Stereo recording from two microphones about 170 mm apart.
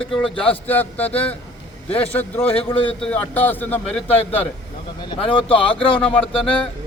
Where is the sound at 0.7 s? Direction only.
10° left (ahead or behind).